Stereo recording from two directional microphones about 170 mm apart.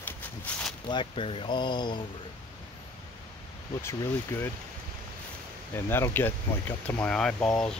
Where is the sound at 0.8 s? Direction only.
30° left (ahead or behind).